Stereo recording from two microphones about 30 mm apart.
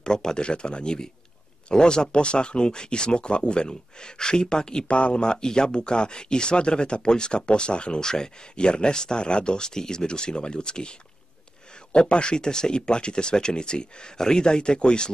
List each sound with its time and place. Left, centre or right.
0.0 s speech: left
4.8 s speech: left
8.0 s speech: left
9.7 s speech: left